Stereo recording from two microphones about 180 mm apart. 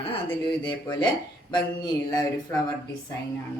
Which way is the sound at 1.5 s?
20° left (ahead or behind).